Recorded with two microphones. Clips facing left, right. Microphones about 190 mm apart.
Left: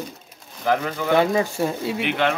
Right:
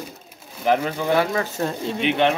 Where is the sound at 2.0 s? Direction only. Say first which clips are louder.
Right 4 dB; 20° right (ahead or behind).